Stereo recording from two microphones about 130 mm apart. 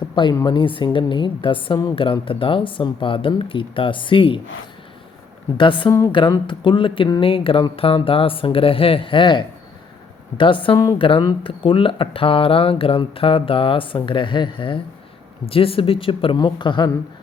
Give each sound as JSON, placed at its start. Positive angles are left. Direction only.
{"t": 0.3, "sound": "speech", "side_deg": 35}
{"t": 5.5, "sound": "speech", "side_deg": 40}